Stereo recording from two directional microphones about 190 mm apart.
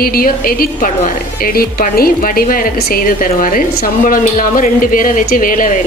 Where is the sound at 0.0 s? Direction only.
50° left (ahead or behind).